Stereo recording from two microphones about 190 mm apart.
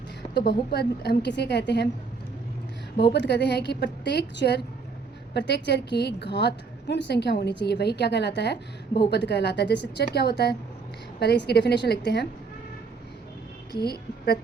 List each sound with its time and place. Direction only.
0.3 s a woman's voice: 60° left (ahead or behind)
3.1 s a woman's voice: 65° left (ahead or behind)